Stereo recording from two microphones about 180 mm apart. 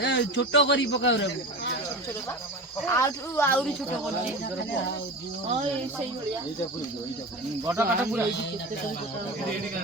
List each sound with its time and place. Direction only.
0.0 s a man's voice: 90° left
2.8 s speech: 15° left (ahead or behind)
7.6 s speech: 15° right (ahead or behind)